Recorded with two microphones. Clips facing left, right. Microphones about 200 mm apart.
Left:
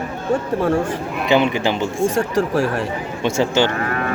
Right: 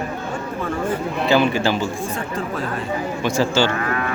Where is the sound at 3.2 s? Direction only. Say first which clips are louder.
Left 2 dB; 25° left (ahead or behind).